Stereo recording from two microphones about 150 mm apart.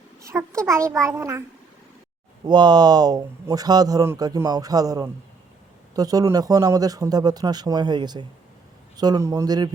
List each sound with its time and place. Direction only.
0.5 s speech: 20° right (ahead or behind)
2.4 s speech: 30° right (ahead or behind)